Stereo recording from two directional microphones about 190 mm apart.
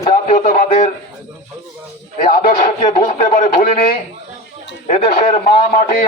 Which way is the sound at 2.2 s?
45° left (ahead or behind).